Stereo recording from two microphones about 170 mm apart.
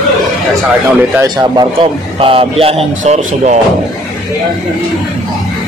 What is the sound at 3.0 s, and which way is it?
Speech, 45° right (ahead or behind).